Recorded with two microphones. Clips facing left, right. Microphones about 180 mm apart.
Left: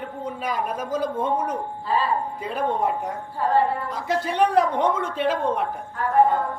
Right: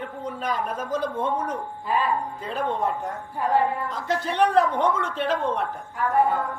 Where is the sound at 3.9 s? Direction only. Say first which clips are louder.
Left 2 dB; 10° left (ahead or behind).